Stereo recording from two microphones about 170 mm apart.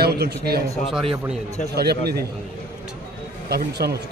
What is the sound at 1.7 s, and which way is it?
Speech, 70° right (ahead or behind).